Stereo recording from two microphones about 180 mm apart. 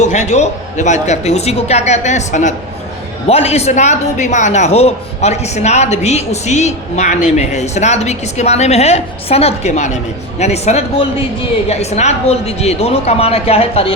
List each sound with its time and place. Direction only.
0.0 s speech: 40° left (ahead or behind)